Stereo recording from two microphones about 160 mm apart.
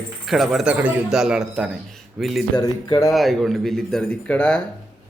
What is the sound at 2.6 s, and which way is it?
Speech, 20° left (ahead or behind).